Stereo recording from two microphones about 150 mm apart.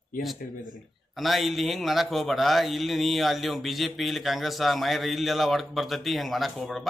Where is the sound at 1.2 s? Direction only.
Centre (ahead or behind).